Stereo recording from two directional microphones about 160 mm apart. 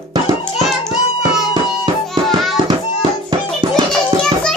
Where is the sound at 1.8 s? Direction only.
30° right (ahead or behind).